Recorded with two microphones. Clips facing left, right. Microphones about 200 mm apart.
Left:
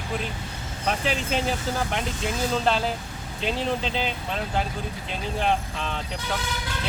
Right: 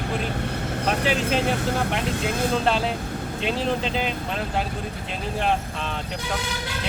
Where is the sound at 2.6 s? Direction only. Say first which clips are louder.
Right 1 dB; centre (ahead or behind).